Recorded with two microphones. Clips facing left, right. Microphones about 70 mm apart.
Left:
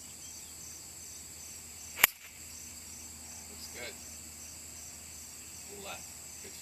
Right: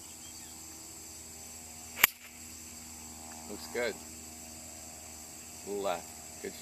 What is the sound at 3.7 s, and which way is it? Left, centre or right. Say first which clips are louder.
Speech: right 13 dB; right.